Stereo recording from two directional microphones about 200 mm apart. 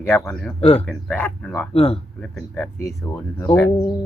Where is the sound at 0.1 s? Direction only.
10° left (ahead or behind).